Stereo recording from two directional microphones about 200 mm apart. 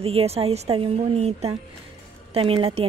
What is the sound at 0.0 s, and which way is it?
Speech, 30° right (ahead or behind).